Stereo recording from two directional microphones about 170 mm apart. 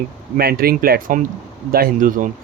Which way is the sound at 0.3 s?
65° right (ahead or behind).